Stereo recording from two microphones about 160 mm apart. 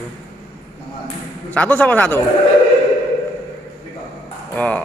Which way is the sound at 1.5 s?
10° left (ahead or behind).